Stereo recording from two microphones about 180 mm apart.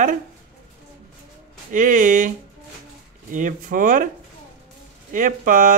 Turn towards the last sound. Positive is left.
turn(degrees=-50)  # may be behind; listen again after turning